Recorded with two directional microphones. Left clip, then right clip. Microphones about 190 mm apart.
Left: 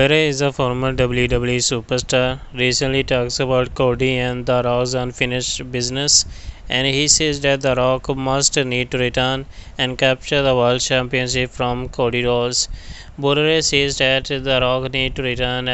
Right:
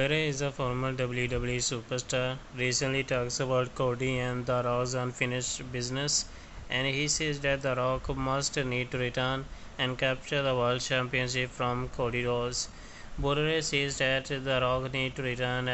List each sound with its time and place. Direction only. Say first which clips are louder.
0.0 s speech: left 14 dB; 50° left (ahead or behind)
3.4 s speech: left 10 dB; 40° left (ahead or behind)
3.7 s speech: left 13 dB; 50° left (ahead or behind)
7.6 s speech: left 13 dB; 45° left (ahead or behind)
11.5 s speech: left 10 dB; 40° left (ahead or behind)